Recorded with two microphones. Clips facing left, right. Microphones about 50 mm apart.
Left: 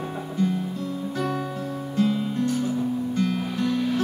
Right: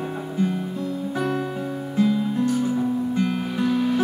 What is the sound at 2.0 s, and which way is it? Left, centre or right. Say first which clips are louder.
Music: right 3 dB; centre.